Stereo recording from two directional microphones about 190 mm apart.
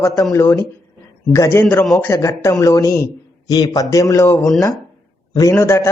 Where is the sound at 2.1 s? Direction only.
15° left (ahead or behind).